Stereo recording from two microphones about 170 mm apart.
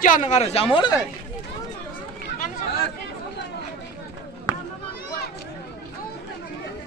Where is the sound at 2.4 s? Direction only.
60° left (ahead or behind).